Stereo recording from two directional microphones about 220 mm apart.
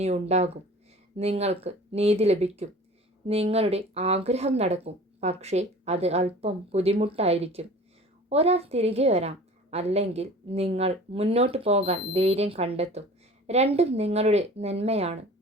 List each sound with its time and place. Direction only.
0.0 s a woman's voice: 30° right (ahead or behind)